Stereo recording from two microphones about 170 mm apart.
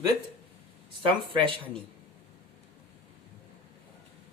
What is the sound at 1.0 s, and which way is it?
Speech, 30° right (ahead or behind).